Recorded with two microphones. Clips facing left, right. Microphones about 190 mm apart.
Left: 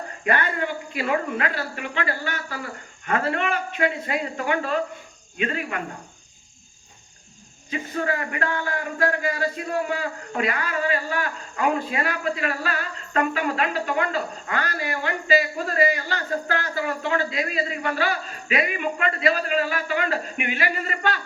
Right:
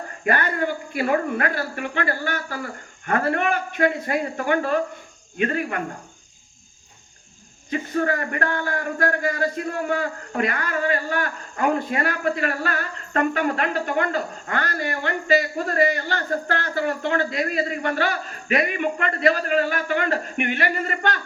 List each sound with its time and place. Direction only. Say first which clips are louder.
0.3 s speech: right 2 dB; 45° right (ahead or behind)
7.7 s a man's voice: right 3 dB; 50° right (ahead or behind)